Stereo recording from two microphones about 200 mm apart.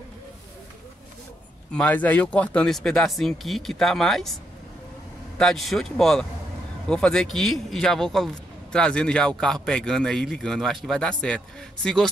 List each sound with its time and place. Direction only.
1.7 s a man's voice: 5° left (ahead or behind)
5.4 s a man's voice: centre (ahead or behind)